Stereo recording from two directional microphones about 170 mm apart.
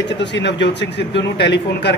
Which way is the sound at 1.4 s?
90° left.